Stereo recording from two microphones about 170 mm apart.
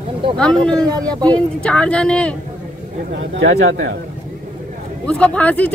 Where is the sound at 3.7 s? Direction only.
90° right.